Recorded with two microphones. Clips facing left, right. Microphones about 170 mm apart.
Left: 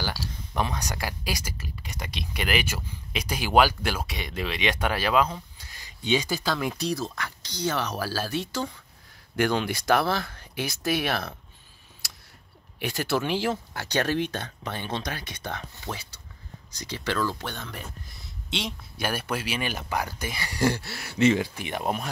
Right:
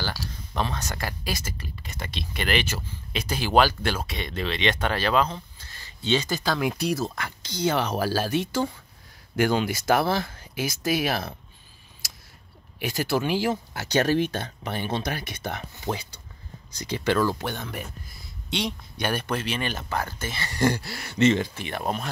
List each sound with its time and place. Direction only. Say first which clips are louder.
0.6 s speech: even; 15° left (ahead or behind)
7.8 s speech: right 4 dB; 55° right (ahead or behind)
8.1 s speech: right 5 dB; 15° right (ahead or behind)
10.0 s speech: right 2 dB; 20° right (ahead or behind)
10.5 s speech: right 1 dB; centre (ahead or behind)
12.7 s speech: right 1 dB; centre (ahead or behind)
13.5 s speech: right 3 dB; 15° right (ahead or behind)
15.9 s speech: right 7 dB; 55° right (ahead or behind)
17.2 s speech: right 4 dB; 15° right (ahead or behind)
18.2 s speech: right 4 dB; centre (ahead or behind)